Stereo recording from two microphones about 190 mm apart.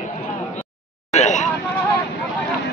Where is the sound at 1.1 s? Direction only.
40° left (ahead or behind).